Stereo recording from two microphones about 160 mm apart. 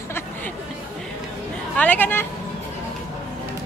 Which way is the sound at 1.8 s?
10° left (ahead or behind).